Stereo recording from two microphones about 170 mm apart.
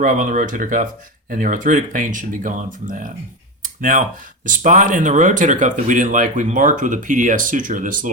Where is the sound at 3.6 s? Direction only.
50° right (ahead or behind).